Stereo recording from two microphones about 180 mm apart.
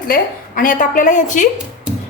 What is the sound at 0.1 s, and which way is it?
A woman's voice, 50° left (ahead or behind).